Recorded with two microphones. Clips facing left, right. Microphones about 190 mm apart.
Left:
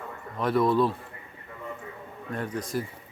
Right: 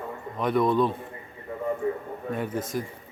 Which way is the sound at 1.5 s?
40° right (ahead or behind).